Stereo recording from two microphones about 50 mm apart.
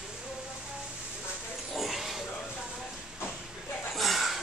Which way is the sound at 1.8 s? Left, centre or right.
Centre.